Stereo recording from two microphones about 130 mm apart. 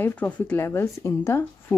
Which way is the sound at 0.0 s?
15° left (ahead or behind).